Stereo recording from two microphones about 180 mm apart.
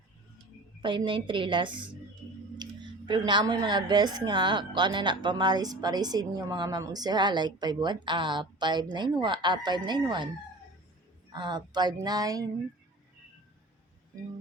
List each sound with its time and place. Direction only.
0.8 s speech: 25° right (ahead or behind)
2.6 s a sound: 25° right (ahead or behind)
3.1 s speech: 25° right (ahead or behind)
11.3 s speech: 25° right (ahead or behind)